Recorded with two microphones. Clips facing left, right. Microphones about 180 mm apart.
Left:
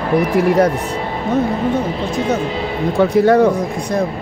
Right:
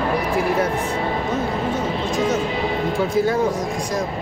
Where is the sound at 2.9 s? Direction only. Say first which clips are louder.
Left 9 dB; 70° left (ahead or behind).